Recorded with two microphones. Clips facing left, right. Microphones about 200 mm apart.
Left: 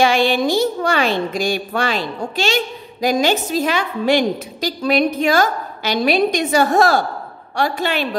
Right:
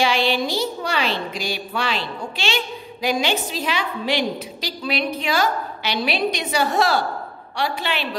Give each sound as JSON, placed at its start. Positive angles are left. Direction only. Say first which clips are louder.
{"t": 0.0, "sound": "a woman's voice", "louder": "left 5 dB", "side_deg": 50}